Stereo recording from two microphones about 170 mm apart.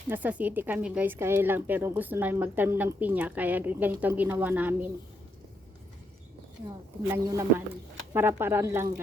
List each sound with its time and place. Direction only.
0.1 s speech: 10° right (ahead or behind)
7.1 s speech: 20° right (ahead or behind)